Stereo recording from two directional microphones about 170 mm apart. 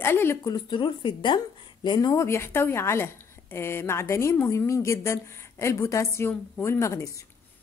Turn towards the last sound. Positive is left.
turn(degrees=20)  # may be behind; listen again after turning